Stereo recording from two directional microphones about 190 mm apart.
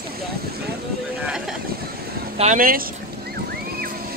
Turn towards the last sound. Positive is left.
turn(degrees=-45)  # may be behind; listen again after turning